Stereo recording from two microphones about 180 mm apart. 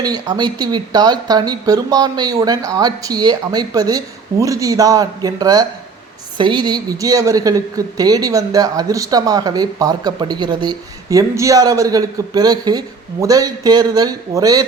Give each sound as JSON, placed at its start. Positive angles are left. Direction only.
{"t": 0.0, "sound": "a woman's voice", "side_deg": -20}